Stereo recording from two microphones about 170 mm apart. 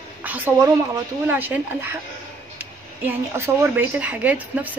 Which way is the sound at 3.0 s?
15° right (ahead or behind).